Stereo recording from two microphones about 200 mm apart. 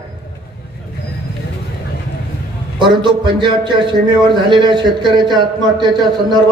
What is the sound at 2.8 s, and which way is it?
A man's voice, 25° right (ahead or behind).